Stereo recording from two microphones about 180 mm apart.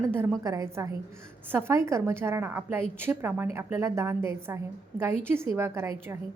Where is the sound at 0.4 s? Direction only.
15° right (ahead or behind).